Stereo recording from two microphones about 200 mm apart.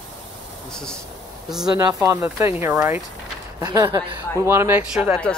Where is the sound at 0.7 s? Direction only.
5° left (ahead or behind).